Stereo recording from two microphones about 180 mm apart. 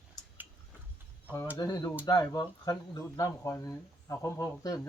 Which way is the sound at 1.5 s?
20° left (ahead or behind).